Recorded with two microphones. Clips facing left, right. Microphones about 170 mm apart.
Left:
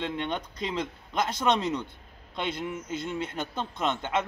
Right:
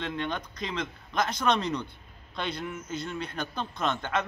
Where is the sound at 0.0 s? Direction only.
25° left (ahead or behind).